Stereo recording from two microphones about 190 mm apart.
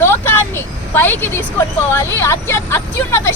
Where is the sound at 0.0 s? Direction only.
10° left (ahead or behind).